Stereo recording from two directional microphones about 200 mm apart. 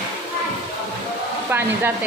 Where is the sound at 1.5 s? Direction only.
10° right (ahead or behind).